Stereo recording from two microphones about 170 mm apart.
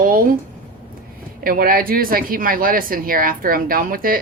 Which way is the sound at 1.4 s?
60° right (ahead or behind).